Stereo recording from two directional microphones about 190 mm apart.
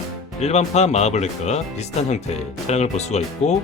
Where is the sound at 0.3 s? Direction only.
35° left (ahead or behind).